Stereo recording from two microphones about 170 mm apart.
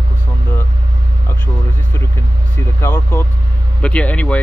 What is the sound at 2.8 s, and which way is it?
Speech, 10° left (ahead or behind).